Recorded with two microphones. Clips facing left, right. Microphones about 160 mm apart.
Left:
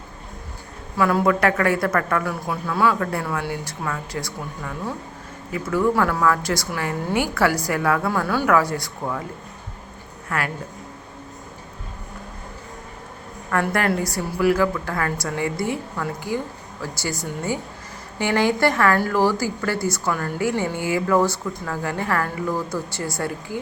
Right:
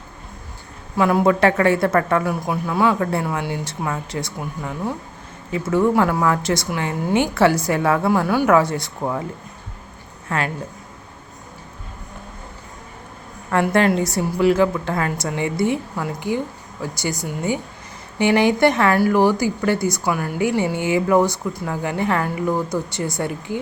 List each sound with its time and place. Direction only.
0.9 s a woman's voice: 20° right (ahead or behind)
10.2 s a woman's voice: 25° right (ahead or behind)
13.5 s a woman's voice: 20° right (ahead or behind)